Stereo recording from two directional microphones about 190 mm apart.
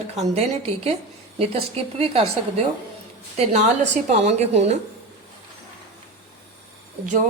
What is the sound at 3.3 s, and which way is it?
Speech, 35° right (ahead or behind).